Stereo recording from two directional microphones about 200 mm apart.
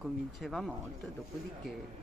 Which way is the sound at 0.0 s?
Centre (ahead or behind).